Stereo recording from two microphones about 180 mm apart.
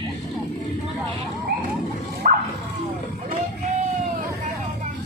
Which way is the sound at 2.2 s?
50° right (ahead or behind).